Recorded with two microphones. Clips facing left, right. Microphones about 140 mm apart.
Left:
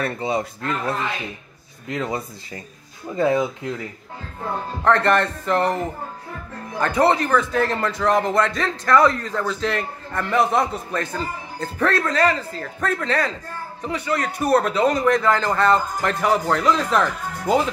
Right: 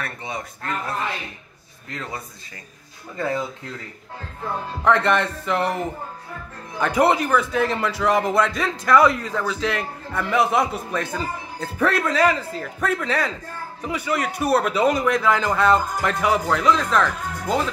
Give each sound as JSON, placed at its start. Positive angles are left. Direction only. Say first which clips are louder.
{"t": 0.0, "sound": "speech", "louder": "left 8 dB", "side_deg": 30}
{"t": 1.9, "sound": "speech", "louder": "left 7 dB", "side_deg": 20}
{"t": 4.8, "sound": "speech", "louder": "left 1 dB", "side_deg": -5}
{"t": 6.8, "sound": "speech", "louder": "even", "side_deg": -10}